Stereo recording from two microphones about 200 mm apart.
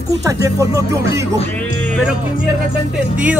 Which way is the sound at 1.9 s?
Centre (ahead or behind).